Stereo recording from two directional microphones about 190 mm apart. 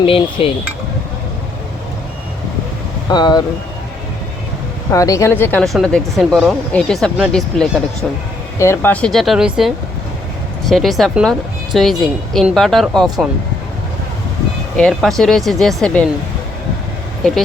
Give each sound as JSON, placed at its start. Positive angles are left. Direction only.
{"t": 0.0, "sound": "speech", "side_deg": 30}
{"t": 3.1, "sound": "speech", "side_deg": 20}
{"t": 4.9, "sound": "speech", "side_deg": 15}
{"t": 8.5, "sound": "speech", "side_deg": 15}
{"t": 14.8, "sound": "speech", "side_deg": 0}